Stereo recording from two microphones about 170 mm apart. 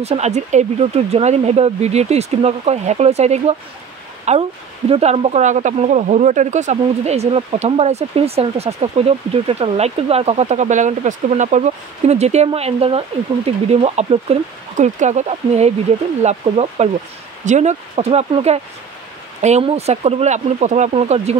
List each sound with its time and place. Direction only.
0.0 s speech: 40° right (ahead or behind)